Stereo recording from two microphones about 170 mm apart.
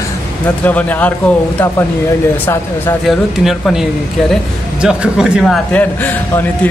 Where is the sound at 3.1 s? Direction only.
Centre (ahead or behind).